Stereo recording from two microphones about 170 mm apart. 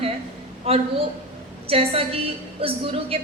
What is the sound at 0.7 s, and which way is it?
A woman's voice, 35° right (ahead or behind).